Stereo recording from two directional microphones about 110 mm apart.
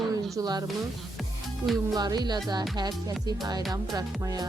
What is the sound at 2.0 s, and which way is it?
Speech, 40° right (ahead or behind).